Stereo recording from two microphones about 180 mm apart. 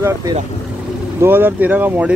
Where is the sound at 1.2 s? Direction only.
10° right (ahead or behind).